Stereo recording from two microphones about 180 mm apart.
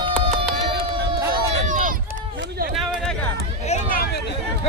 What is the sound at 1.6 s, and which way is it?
Run, 45° right (ahead or behind).